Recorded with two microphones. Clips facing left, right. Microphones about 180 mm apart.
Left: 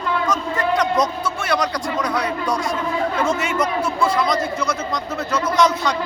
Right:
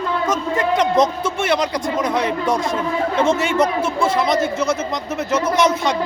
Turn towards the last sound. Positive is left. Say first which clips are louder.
# right 1 dB
turn(degrees=-20)  # may be behind; listen again after turning